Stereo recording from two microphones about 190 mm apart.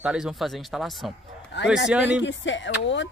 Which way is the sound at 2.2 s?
70° left (ahead or behind).